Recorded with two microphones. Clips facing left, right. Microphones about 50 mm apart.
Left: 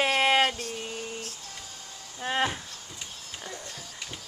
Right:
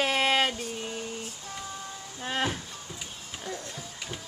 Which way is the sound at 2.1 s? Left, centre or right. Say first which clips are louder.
Left 2 dB; centre.